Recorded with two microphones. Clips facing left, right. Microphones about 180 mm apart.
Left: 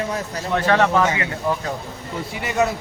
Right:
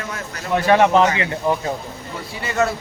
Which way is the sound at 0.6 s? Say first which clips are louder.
Right 3 dB; 15° right (ahead or behind).